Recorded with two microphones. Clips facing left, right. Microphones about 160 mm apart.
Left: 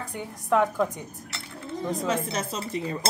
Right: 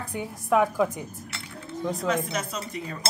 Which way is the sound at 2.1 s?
30° left (ahead or behind).